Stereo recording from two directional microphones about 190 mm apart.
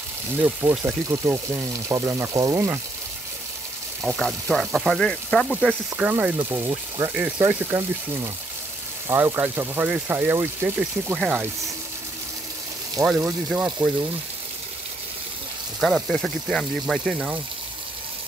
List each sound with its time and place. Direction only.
0.4 s speech: 10° right (ahead or behind)
4.0 s speech: centre (ahead or behind)
5.9 s speech: 10° right (ahead or behind)
13.0 s speech: 5° right (ahead or behind)
15.8 s speech: centre (ahead or behind)